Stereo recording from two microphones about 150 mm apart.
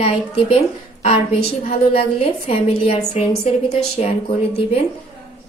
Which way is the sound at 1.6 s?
40° left (ahead or behind).